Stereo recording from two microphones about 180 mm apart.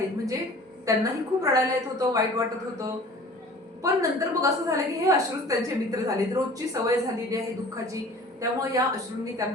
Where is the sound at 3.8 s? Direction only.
20° right (ahead or behind).